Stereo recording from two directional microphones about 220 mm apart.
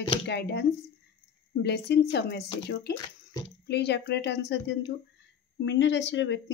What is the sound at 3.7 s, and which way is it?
Speech, 50° left (ahead or behind).